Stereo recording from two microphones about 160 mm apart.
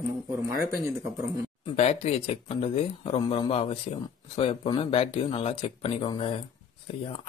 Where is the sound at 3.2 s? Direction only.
30° left (ahead or behind).